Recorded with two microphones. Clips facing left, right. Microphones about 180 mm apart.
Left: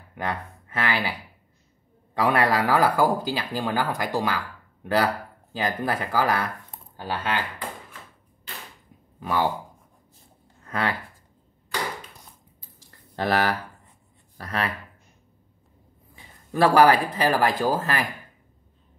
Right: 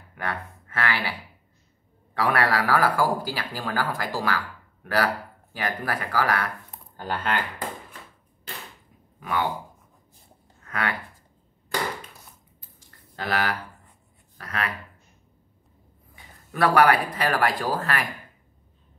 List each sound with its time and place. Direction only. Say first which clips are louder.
0.1 s speech: left 2 dB; 20° left (ahead or behind)
2.1 s speech: left 2 dB; 20° left (ahead or behind)
7.0 s speech: even; 10° left (ahead or behind)
10.6 s speech: left 2 dB; 30° left (ahead or behind)
13.2 s speech: left 4 dB; 35° left (ahead or behind)
16.5 s speech: left 2 dB; 30° left (ahead or behind)